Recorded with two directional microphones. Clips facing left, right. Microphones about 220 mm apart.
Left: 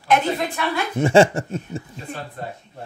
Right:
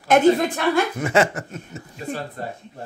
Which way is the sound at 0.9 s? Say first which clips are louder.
Left 5 dB; 30° left (ahead or behind).